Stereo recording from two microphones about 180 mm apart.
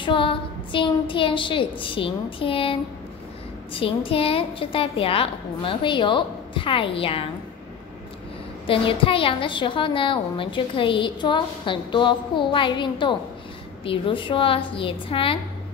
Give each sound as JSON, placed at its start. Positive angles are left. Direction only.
{"t": 0.0, "sound": "a woman's voice", "side_deg": 30}
{"t": 8.6, "sound": "a woman's voice", "side_deg": 30}